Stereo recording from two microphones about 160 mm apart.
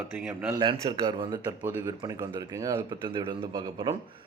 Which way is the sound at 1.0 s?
25° right (ahead or behind).